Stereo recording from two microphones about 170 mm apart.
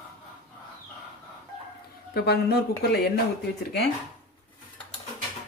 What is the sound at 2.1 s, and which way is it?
Speech, 70° left (ahead or behind).